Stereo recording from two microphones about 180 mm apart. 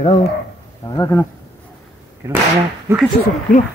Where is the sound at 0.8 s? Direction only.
20° left (ahead or behind).